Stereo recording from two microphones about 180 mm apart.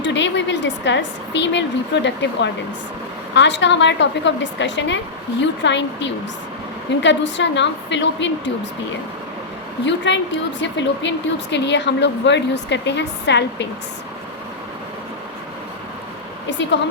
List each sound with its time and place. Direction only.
0.0 s a woman's voice: 85° left
9.8 s a woman's voice: 85° left